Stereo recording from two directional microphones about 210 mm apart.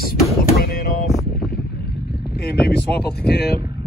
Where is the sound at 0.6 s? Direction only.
45° left (ahead or behind).